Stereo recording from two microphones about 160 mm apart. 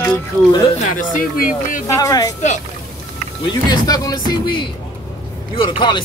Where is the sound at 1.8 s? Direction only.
20° left (ahead or behind).